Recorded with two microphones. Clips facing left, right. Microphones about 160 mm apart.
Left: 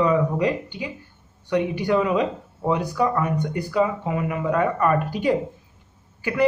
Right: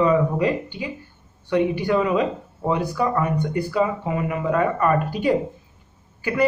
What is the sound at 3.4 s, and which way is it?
Speech, 15° left (ahead or behind).